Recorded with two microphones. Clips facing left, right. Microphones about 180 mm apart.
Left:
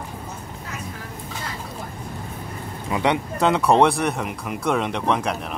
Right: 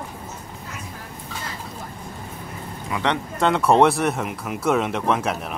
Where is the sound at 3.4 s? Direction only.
Centre (ahead or behind).